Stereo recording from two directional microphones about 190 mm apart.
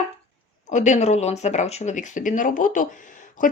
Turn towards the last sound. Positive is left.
turn(degrees=40)  # may be behind; listen again after turning